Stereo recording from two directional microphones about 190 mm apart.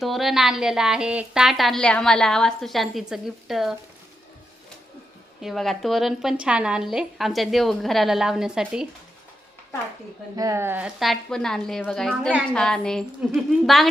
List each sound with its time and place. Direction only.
0.0 s a woman's voice: centre (ahead or behind)
5.4 s a woman's voice: centre (ahead or behind)
10.3 s a woman's voice: 15° right (ahead or behind); by 13.8 s centre (ahead or behind)